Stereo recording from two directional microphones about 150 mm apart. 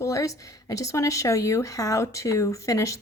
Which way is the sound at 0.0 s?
20° left (ahead or behind).